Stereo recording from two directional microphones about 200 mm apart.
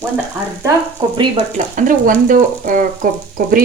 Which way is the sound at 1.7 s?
45° right (ahead or behind).